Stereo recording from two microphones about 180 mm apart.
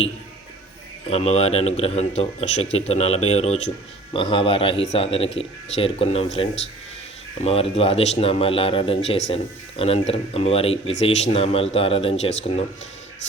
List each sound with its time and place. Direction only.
1.0 s a man's voice: 35° left (ahead or behind)